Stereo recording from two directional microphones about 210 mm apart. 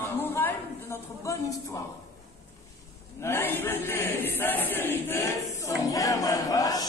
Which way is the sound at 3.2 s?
10° left (ahead or behind).